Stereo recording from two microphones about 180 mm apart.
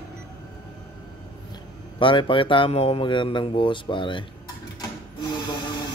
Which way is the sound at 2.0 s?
30° left (ahead or behind).